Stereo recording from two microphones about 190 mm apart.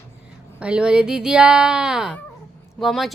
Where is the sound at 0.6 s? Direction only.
5° right (ahead or behind).